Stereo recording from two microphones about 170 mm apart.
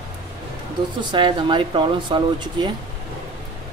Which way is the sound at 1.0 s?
25° right (ahead or behind).